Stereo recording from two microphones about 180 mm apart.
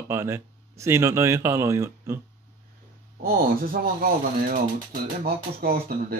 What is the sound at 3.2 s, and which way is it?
Speech, 50° right (ahead or behind).